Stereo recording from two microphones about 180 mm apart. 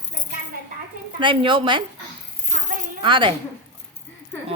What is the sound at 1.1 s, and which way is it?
Speech, 30° right (ahead or behind).